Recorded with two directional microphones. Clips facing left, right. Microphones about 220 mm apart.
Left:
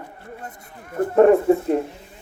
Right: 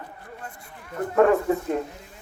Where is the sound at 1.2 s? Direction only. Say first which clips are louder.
Left 5 dB; 25° left (ahead or behind).